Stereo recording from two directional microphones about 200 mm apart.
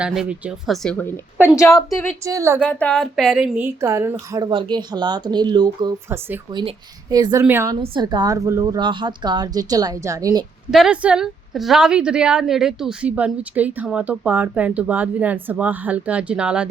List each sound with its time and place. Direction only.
0.0 s a woman's voice: 5° right (ahead or behind); by 2.0 s 15° left (ahead or behind)
2.2 s a woman's voice: 15° right (ahead or behind)
2.6 s a woman's voice: 5° left (ahead or behind); by 6.4 s 10° right (ahead or behind)
6.5 s a woman's voice: 20° right (ahead or behind)
7.8 s a woman's voice: 25° right (ahead or behind)
10.7 s a woman's voice: centre (ahead or behind)